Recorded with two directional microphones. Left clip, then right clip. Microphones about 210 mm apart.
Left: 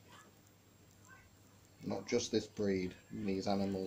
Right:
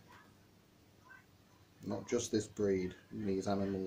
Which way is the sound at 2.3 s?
15° left (ahead or behind).